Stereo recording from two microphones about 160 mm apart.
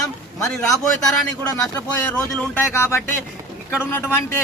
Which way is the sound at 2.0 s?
5° left (ahead or behind).